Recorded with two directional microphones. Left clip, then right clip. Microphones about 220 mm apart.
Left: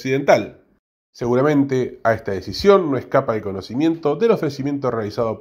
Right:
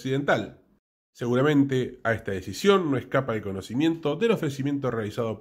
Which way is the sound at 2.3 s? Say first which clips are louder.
Left 7 dB; 20° right (ahead or behind).